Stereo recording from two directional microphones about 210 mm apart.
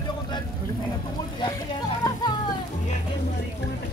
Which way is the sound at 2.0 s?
20° left (ahead or behind).